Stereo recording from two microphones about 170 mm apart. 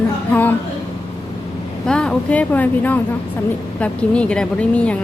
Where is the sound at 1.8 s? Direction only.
5° left (ahead or behind).